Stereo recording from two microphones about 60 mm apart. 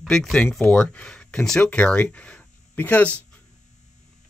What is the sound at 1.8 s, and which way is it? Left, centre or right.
Speech, left.